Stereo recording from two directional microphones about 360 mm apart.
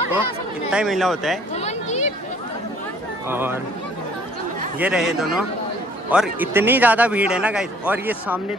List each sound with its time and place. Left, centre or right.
0.7 s a man's voice: centre
1.6 s a sound: centre
3.3 s a man's voice: centre
4.7 s a man's voice: centre